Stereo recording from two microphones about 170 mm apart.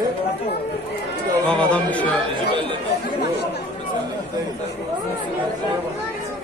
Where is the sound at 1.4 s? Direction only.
5° left (ahead or behind).